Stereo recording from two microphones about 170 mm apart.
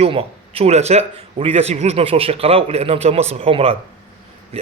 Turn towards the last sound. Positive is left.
turn(degrees=-35)  # may be behind; listen again after turning